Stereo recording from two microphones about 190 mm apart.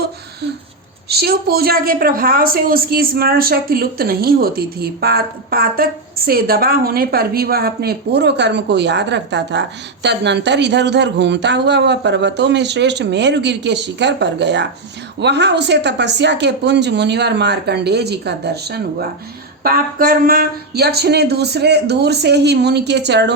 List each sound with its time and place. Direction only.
1.0 s a woman's voice: 55° right (ahead or behind)